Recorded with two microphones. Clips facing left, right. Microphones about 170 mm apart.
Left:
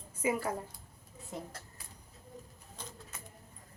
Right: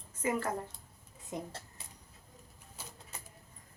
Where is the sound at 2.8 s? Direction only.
10° right (ahead or behind).